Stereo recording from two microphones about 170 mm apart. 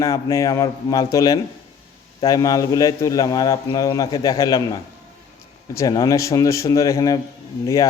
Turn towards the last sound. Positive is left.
turn(degrees=20)  # may be behind; listen again after turning